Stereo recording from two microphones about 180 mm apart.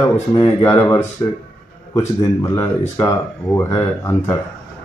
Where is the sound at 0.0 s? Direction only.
20° left (ahead or behind).